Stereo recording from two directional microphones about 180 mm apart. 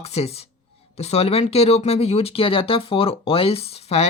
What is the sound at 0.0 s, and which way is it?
Speech, 35° left (ahead or behind).